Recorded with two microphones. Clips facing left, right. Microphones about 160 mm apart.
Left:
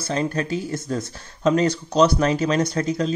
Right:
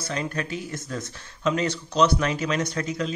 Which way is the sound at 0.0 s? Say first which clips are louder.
Left 6 dB; 35° left (ahead or behind).